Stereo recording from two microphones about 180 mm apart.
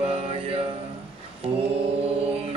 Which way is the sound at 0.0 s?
35° right (ahead or behind).